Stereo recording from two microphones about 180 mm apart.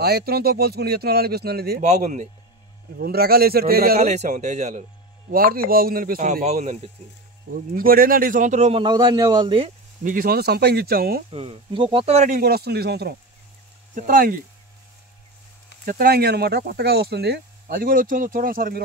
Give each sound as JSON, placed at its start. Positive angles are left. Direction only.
{"t": 0.0, "sound": "speech", "side_deg": -60}
{"t": 1.8, "sound": "a man's voice", "side_deg": -40}
{"t": 3.0, "sound": "speech", "side_deg": -60}
{"t": 4.0, "sound": "a man's voice", "side_deg": -40}
{"t": 5.3, "sound": "a man's voice", "side_deg": -55}
{"t": 7.5, "sound": "a man's voice", "side_deg": -55}
{"t": 10.0, "sound": "speech", "side_deg": -55}
{"t": 11.2, "sound": "a man's voice", "side_deg": -30}
{"t": 12.4, "sound": "speech", "side_deg": -60}
{"t": 13.9, "sound": "a man's voice", "side_deg": -50}
{"t": 15.8, "sound": "a man's voice", "side_deg": -55}